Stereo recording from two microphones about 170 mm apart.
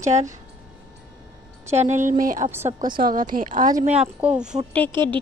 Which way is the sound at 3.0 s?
55° right (ahead or behind).